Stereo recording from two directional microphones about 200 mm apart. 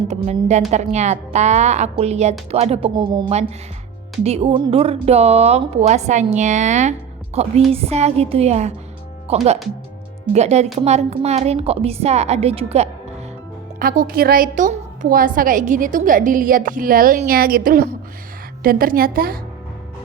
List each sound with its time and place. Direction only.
0.1 s speech: 35° right (ahead or behind)
13.7 s a woman's voice: 45° right (ahead or behind)